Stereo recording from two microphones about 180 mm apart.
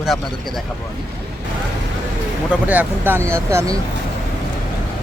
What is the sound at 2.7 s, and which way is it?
Speech, 10° right (ahead or behind).